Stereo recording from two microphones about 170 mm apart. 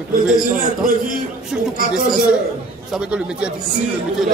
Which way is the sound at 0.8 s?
50° right (ahead or behind).